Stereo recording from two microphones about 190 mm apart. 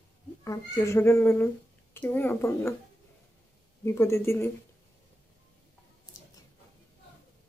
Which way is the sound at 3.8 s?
15° left (ahead or behind).